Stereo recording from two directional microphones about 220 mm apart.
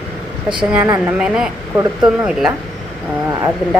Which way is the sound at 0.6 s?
5° right (ahead or behind).